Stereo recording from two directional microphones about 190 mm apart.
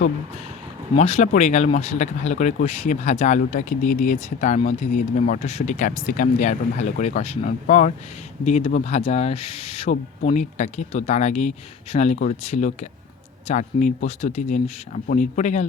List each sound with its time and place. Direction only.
0.9 s speech: 35° left (ahead or behind)
9.9 s speech: 40° left (ahead or behind)